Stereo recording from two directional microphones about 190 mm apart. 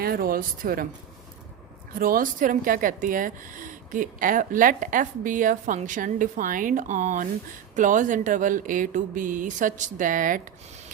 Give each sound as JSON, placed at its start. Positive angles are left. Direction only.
{"t": 0.0, "sound": "speech", "side_deg": -50}
{"t": 1.9, "sound": "speech", "side_deg": -50}